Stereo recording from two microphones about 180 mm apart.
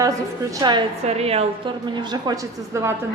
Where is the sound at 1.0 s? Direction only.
35° right (ahead or behind).